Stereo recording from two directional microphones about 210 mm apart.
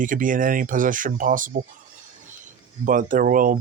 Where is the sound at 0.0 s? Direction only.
40° right (ahead or behind).